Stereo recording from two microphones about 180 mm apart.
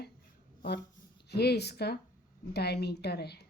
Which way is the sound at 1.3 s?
65° left (ahead or behind).